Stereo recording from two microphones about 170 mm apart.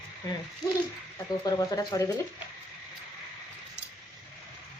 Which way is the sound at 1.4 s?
25° left (ahead or behind).